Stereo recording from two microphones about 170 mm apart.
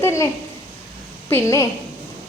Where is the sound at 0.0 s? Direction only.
15° left (ahead or behind).